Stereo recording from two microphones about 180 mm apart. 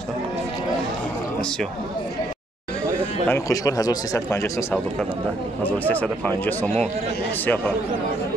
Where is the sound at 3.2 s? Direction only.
15° left (ahead or behind).